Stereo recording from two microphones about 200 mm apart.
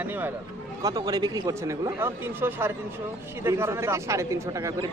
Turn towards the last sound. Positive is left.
turn(degrees=-15)  # may be behind; listen again after turning